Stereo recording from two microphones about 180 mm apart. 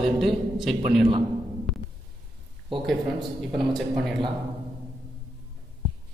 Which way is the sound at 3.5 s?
Centre (ahead or behind).